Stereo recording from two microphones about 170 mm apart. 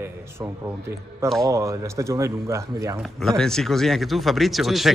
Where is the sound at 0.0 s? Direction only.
15° right (ahead or behind).